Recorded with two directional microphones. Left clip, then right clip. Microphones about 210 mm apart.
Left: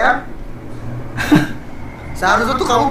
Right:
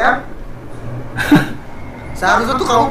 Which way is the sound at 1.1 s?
10° right (ahead or behind).